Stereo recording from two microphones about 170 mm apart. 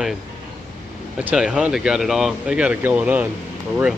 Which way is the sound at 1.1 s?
5° right (ahead or behind).